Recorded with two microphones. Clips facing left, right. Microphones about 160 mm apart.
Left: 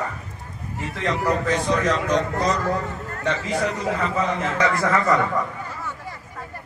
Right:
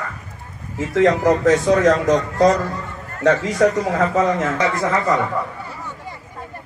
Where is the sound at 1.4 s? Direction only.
90° right.